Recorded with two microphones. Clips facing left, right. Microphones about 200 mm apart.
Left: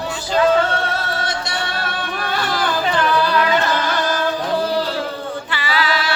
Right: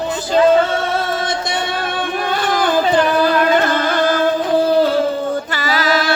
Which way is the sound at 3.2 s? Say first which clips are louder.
Right 4 dB; 50° right (ahead or behind).